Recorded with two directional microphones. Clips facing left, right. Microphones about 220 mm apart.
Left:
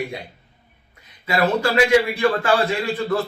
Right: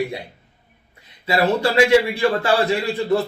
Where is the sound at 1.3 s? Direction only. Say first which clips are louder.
Right 1 dB; 25° right (ahead or behind).